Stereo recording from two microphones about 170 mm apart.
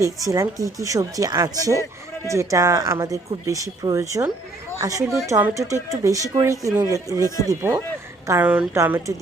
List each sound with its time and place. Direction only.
0.0 s speech: 20° right (ahead or behind)
7.3 s speech: 20° left (ahead or behind)
8.3 s speech: 10° right (ahead or behind)